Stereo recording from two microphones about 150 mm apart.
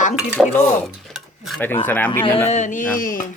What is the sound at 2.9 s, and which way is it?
Speech, 65° left (ahead or behind).